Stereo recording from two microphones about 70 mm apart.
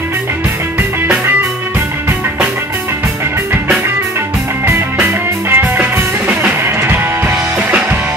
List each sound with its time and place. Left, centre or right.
4.6 s music: right